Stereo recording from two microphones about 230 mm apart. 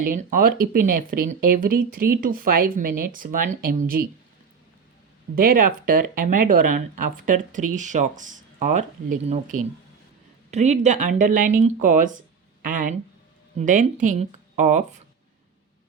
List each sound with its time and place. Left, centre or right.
0.0 s speech: right
5.3 s speech: right